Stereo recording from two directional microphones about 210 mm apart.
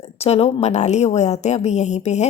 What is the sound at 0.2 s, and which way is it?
Speech, 30° left (ahead or behind).